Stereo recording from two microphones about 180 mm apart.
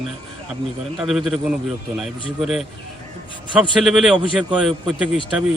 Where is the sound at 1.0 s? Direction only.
Centre (ahead or behind).